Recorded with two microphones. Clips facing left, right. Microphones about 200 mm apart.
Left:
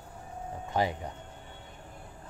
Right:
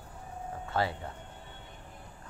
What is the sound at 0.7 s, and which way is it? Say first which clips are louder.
Speech: left 2 dB; 15° left (ahead or behind).